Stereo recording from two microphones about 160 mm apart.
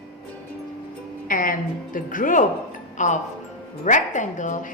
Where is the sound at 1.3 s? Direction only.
60° left (ahead or behind).